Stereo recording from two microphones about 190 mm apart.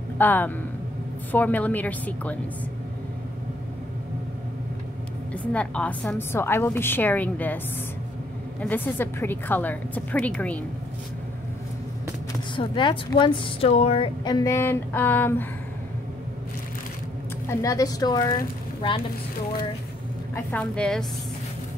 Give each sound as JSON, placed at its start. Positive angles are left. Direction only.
{"t": 0.2, "sound": "a woman's voice", "side_deg": 10}
{"t": 5.3, "sound": "a woman's voice", "side_deg": 5}
{"t": 12.5, "sound": "a woman's voice", "side_deg": 25}
{"t": 17.5, "sound": "a woman's voice", "side_deg": 15}
{"t": 20.3, "sound": "a woman's voice", "side_deg": 5}